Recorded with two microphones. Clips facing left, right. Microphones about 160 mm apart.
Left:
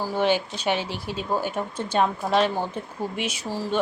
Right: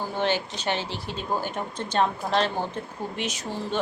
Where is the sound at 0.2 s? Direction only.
10° left (ahead or behind).